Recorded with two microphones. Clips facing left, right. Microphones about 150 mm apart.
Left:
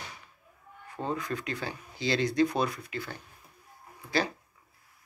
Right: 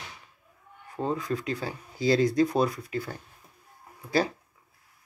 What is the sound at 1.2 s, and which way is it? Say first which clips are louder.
Speech: right 4 dB; 30° right (ahead or behind).